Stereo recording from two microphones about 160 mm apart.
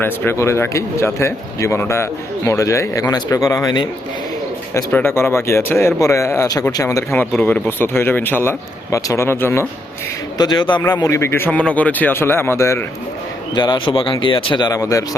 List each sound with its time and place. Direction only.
0.0 s speech: 15° left (ahead or behind)
10.3 s speech: 25° left (ahead or behind)
13.6 s speech: 30° left (ahead or behind)